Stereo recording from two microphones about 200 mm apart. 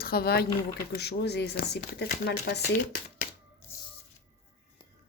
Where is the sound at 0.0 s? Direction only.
50° left (ahead or behind).